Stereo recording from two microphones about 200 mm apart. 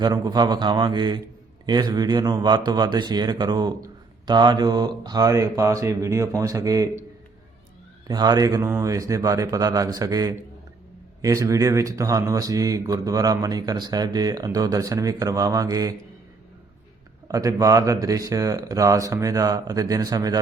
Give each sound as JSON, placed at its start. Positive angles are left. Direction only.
{"t": 0.0, "sound": "speech", "side_deg": -20}
{"t": 8.0, "sound": "speech", "side_deg": -20}
{"t": 17.2, "sound": "speech", "side_deg": -15}